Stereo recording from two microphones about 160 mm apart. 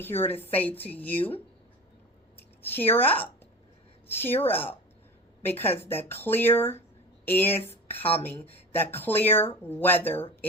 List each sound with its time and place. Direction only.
0.0 s a woman's voice: 15° left (ahead or behind)
4.4 s speech: 10° left (ahead or behind)
7.6 s speech: 40° left (ahead or behind)
8.7 s speech: 15° left (ahead or behind)